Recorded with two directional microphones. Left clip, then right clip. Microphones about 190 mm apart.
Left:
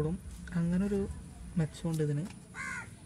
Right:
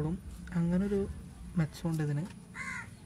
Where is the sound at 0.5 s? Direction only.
50° right (ahead or behind).